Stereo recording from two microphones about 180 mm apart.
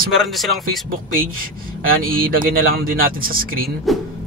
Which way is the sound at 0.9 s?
55° right (ahead or behind).